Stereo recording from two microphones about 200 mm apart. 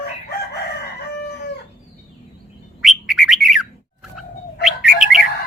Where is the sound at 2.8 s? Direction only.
Centre (ahead or behind).